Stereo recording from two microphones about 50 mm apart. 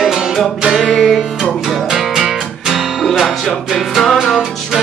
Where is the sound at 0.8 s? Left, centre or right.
Centre.